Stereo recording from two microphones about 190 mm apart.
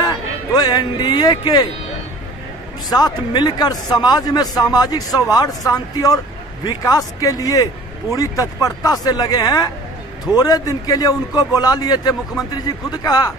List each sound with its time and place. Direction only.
0.0 s speech: 20° left (ahead or behind)
2.9 s a man's voice: 20° left (ahead or behind)